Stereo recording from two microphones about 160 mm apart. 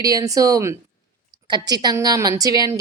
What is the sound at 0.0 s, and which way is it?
A woman's voice, 20° right (ahead or behind).